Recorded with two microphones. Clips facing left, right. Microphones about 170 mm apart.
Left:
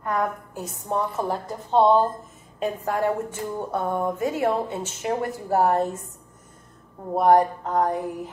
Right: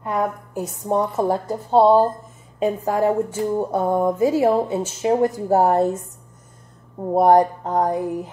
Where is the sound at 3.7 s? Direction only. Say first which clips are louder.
Right 6 dB; 35° right (ahead or behind).